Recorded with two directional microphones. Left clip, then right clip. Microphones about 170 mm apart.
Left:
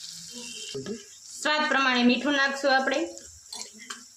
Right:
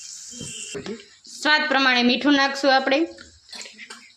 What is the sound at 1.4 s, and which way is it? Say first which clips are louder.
Speech: right 5 dB; 30° right (ahead or behind).